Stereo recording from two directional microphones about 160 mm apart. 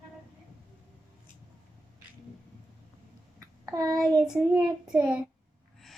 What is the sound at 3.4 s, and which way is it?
Child singing, 20° right (ahead or behind).